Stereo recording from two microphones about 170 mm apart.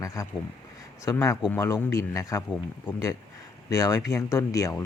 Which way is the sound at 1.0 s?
15° left (ahead or behind).